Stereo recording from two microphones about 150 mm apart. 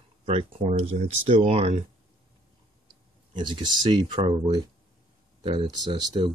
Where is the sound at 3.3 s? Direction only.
30° right (ahead or behind).